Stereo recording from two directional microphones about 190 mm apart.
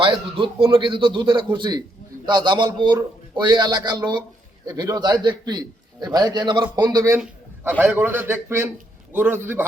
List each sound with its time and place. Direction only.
0.0 s a man's voice: 25° right (ahead or behind)